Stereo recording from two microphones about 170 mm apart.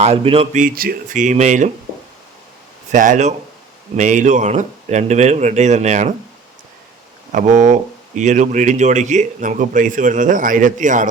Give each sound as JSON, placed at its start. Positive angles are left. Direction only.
{"t": 0.0, "sound": "speech", "side_deg": -35}
{"t": 0.6, "sound": "speech", "side_deg": -55}
{"t": 2.9, "sound": "speech", "side_deg": -50}
{"t": 7.3, "sound": "speech", "side_deg": -45}